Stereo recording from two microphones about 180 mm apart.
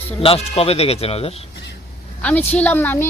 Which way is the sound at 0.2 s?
35° left (ahead or behind).